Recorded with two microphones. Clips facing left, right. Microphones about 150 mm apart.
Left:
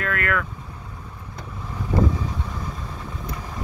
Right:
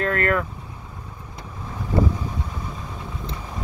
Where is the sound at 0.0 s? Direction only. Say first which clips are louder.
Right 4 dB; 35° right (ahead or behind).